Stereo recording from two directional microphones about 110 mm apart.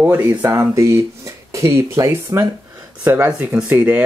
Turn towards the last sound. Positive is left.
turn(degrees=-15)  # may be behind; listen again after turning